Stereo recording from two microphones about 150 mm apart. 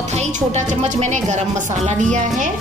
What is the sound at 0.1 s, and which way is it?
A woman's voice, 50° right (ahead or behind).